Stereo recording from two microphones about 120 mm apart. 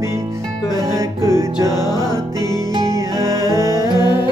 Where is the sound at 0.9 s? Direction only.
25° right (ahead or behind).